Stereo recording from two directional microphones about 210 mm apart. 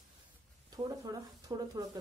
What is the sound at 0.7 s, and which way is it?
Speech, 15° right (ahead or behind).